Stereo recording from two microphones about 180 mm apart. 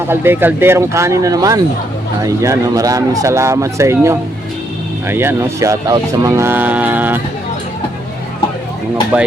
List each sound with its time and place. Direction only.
0.1 s speech: 10° right (ahead or behind)
9.1 s speech: 10° right (ahead or behind)